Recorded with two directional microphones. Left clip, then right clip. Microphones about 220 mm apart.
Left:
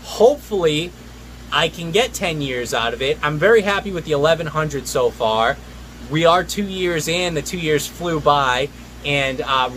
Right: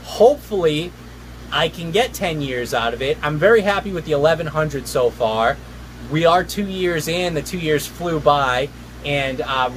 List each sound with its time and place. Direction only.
0.1 s speech: 5° left (ahead or behind)